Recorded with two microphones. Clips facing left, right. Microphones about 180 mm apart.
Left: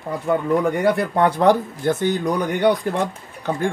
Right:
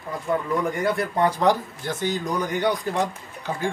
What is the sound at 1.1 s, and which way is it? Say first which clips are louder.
Speech: left 4 dB; 65° left (ahead or behind).